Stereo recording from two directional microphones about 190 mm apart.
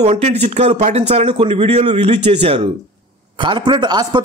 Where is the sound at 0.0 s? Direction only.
35° right (ahead or behind).